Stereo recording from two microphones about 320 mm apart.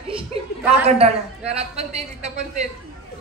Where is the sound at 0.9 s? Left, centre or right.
Centre.